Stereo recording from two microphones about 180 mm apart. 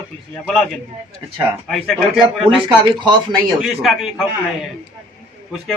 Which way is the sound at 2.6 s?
25° right (ahead or behind).